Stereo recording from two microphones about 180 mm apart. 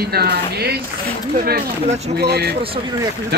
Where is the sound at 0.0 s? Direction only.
60° right (ahead or behind).